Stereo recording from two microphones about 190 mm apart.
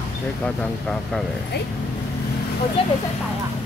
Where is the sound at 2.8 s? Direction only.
30° left (ahead or behind).